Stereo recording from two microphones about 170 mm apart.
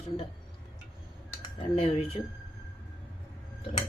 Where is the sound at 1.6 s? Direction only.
35° left (ahead or behind).